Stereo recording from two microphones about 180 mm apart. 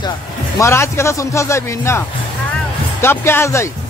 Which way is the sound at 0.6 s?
15° left (ahead or behind).